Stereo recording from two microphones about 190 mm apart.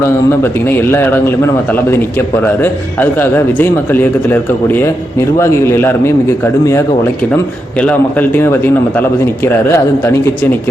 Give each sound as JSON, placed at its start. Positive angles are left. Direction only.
{"t": 0.0, "sound": "a man's voice", "side_deg": 10}